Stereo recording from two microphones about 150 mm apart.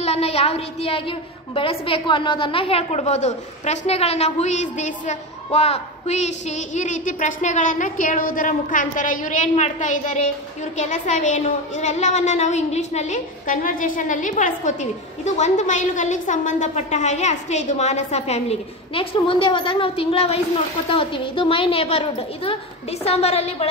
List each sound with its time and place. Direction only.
0.0 s a woman's voice: 45° left (ahead or behind)